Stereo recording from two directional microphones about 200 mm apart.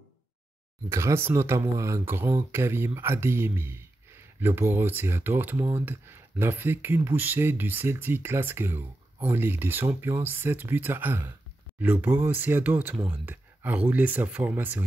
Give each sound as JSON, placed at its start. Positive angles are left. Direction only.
{"t": 0.8, "sound": "speech", "side_deg": -15}